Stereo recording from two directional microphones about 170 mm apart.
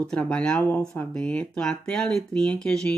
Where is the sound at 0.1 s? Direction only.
5° left (ahead or behind).